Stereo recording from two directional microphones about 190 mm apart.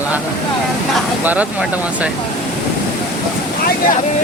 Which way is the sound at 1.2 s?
10° right (ahead or behind).